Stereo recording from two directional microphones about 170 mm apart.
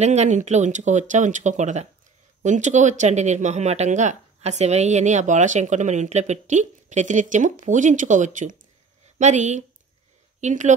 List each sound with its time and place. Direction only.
0.0 s speech: 40° right (ahead or behind)